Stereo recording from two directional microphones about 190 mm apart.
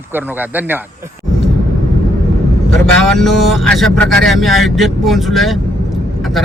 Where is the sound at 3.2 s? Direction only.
Centre (ahead or behind).